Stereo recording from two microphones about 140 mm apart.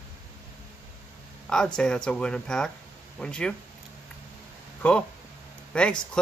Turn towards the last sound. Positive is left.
turn(degrees=10)  # may be behind; listen again after turning